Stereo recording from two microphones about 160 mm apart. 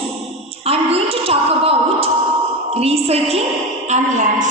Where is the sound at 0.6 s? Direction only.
40° right (ahead or behind).